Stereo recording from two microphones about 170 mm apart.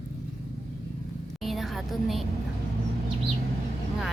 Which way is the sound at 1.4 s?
Centre (ahead or behind).